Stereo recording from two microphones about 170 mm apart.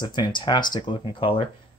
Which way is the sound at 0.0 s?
25° left (ahead or behind).